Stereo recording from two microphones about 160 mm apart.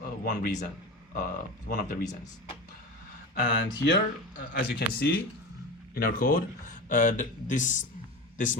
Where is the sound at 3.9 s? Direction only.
90° left; by 6.3 s 65° left (ahead or behind).